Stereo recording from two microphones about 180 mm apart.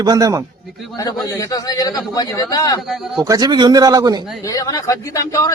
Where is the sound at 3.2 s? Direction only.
20° right (ahead or behind).